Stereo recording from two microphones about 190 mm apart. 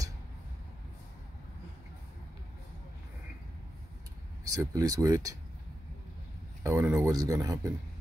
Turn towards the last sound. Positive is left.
turn(degrees=-20)  # may be behind; listen again after turning